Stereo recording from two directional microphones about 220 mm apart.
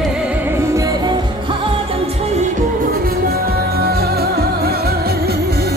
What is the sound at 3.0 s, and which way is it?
Music, 45° right (ahead or behind).